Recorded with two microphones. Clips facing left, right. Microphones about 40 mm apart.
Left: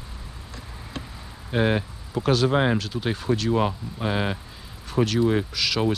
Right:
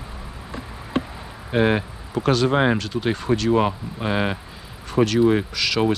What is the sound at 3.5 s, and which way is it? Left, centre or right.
Speech, centre.